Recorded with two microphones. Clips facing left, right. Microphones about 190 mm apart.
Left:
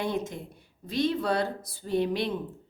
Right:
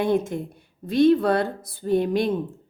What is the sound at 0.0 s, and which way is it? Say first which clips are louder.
Speech: right 8 dB; 55° right (ahead or behind).